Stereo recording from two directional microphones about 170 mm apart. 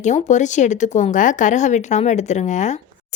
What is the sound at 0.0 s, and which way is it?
Speech, 45° left (ahead or behind).